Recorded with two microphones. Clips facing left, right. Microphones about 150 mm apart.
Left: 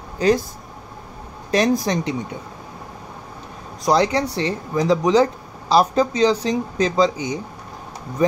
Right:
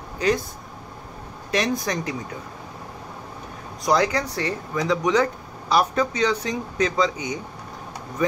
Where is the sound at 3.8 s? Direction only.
30° left (ahead or behind).